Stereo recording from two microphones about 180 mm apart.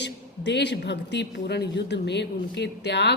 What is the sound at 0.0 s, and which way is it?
Speech, 75° left (ahead or behind).